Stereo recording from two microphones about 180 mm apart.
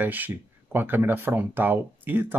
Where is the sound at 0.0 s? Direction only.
10° right (ahead or behind).